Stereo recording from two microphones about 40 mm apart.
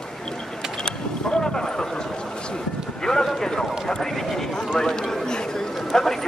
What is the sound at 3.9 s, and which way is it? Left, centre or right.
Speech, centre.